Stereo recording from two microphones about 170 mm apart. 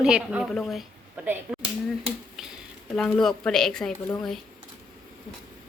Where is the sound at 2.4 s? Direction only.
Centre (ahead or behind).